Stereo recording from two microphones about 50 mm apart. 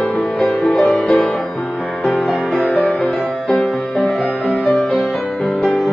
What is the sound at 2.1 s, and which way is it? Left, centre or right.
Music, left.